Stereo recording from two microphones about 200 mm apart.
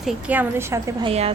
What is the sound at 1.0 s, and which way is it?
Speech, 30° right (ahead or behind).